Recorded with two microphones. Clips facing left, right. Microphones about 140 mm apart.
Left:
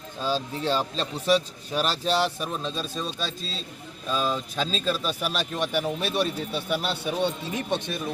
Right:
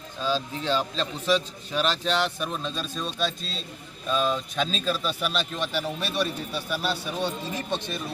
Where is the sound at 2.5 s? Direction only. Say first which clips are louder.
Left 1 dB; centre (ahead or behind).